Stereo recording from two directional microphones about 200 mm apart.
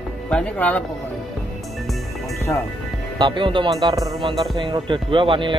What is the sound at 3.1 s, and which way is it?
Speech, 25° right (ahead or behind).